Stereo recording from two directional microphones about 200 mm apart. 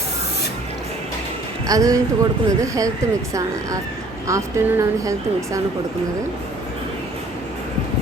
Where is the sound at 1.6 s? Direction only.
15° right (ahead or behind).